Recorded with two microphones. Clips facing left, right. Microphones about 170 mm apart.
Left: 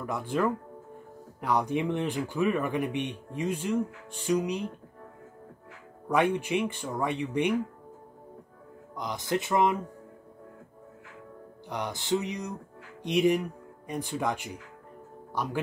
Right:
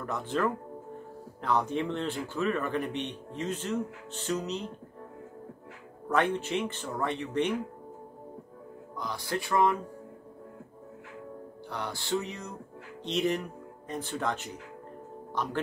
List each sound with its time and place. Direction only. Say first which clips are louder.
0.0 s speech: left 2 dB; 10° left (ahead or behind)
6.0 s speech: left 2 dB; 15° left (ahead or behind)
8.9 s speech: left 4 dB; 20° left (ahead or behind)
11.7 s speech: left 3 dB; 20° left (ahead or behind)